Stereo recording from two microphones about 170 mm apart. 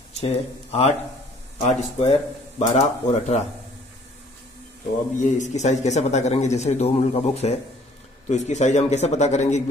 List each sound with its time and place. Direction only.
0.2 s a man's voice: 35° left (ahead or behind)
5.2 s a man's voice: 45° left (ahead or behind)